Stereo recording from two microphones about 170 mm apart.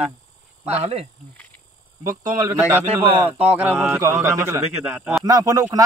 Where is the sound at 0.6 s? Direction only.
35° right (ahead or behind).